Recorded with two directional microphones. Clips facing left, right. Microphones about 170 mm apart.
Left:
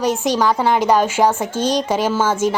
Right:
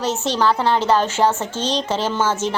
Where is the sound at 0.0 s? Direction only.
10° left (ahead or behind).